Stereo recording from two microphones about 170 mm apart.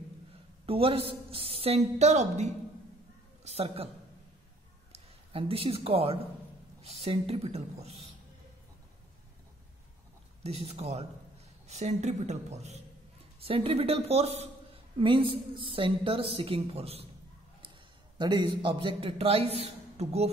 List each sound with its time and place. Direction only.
0.7 s a man's voice: 35° right (ahead or behind)
4.9 s a man's voice: 35° right (ahead or behind)
10.4 s a man's voice: 35° right (ahead or behind)
18.1 s a man's voice: 25° right (ahead or behind)